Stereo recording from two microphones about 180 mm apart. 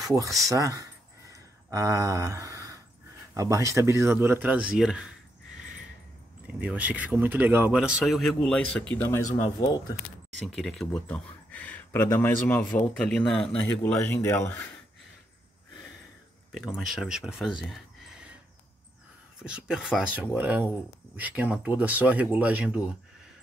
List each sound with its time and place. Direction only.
0.0 s speech: 20° right (ahead or behind)
1.3 s a sound: 20° right (ahead or behind)
3.3 s speech: 15° right (ahead or behind)
6.4 s speech: 5° right (ahead or behind); by 9.2 s 10° left (ahead or behind)
10.4 s speech: centre (ahead or behind)
16.5 s speech: centre (ahead or behind)
19.4 s speech: 5° right (ahead or behind)